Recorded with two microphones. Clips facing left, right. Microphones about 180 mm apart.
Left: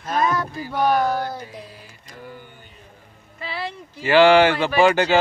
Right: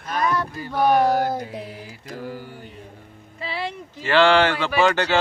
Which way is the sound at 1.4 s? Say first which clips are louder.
Right 5 dB; 65° right (ahead or behind).